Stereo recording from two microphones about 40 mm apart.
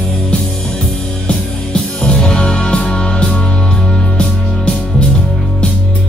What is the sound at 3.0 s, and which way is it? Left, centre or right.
Music, left.